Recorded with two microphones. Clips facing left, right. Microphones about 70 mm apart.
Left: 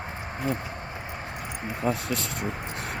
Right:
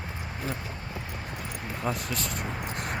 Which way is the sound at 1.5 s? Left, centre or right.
Left.